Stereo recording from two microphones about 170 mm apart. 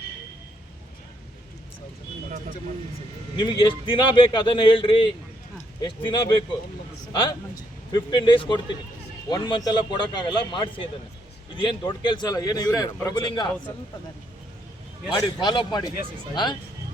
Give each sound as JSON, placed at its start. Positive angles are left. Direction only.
{"t": 3.3, "sound": "a man's voice", "side_deg": 25}
{"t": 15.2, "sound": "a man's voice", "side_deg": 25}